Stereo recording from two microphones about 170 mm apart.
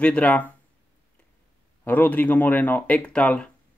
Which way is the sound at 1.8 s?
10° left (ahead or behind).